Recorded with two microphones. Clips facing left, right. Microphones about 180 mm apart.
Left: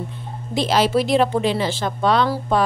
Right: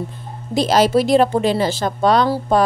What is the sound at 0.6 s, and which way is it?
Speech, 40° right (ahead or behind).